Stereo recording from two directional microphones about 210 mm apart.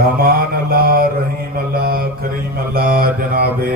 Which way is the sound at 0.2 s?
45° right (ahead or behind).